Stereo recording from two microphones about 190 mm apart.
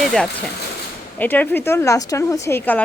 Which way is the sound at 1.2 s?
10° left (ahead or behind).